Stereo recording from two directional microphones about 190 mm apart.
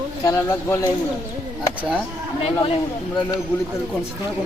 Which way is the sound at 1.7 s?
5° right (ahead or behind).